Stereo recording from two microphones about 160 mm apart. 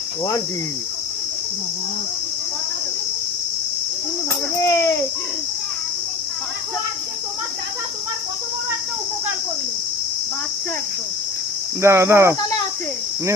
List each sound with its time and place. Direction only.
4.5 s a child's voice: 20° left (ahead or behind)
11.8 s speech: 15° right (ahead or behind)